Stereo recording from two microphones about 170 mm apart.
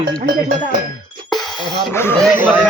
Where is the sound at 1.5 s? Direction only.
25° left (ahead or behind).